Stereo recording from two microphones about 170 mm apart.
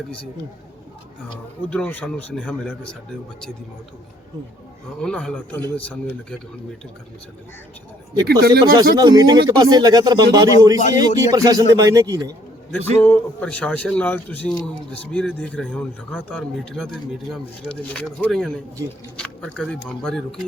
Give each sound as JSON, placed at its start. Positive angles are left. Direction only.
{"t": 1.7, "sound": "a man's voice", "side_deg": 10}
{"t": 4.9, "sound": "a man's voice", "side_deg": 5}
{"t": 8.2, "sound": "speech", "side_deg": -70}
{"t": 9.0, "sound": "speech", "side_deg": -25}
{"t": 13.0, "sound": "a man's voice", "side_deg": 10}